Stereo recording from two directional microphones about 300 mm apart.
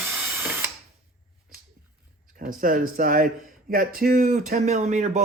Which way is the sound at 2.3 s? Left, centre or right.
Right.